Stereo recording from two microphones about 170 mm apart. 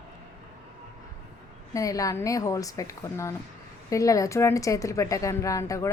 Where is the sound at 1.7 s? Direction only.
20° left (ahead or behind).